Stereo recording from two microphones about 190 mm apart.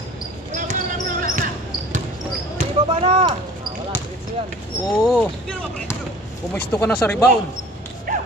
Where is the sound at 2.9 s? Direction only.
30° right (ahead or behind).